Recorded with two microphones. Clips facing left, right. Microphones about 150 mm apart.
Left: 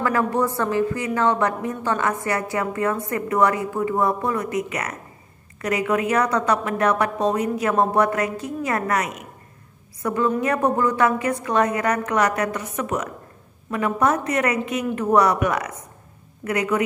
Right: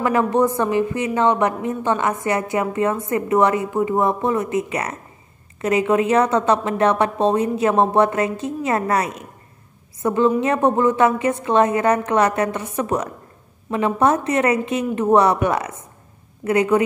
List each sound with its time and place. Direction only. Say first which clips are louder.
0.0 s a woman's voice: right 4 dB; 20° right (ahead or behind)